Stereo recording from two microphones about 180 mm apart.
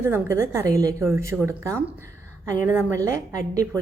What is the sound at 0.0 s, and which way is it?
Speech, 15° right (ahead or behind).